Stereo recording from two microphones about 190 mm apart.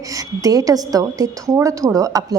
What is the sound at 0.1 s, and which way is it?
A woman's voice, 20° right (ahead or behind).